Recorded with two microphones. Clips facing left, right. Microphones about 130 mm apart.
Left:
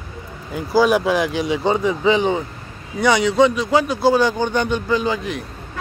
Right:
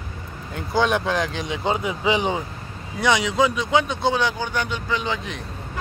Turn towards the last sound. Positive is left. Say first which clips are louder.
# left 6 dB
turn(degrees=15)  # may be behind; listen again after turning